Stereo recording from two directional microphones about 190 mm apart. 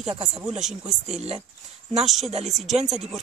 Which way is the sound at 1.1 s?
35° right (ahead or behind).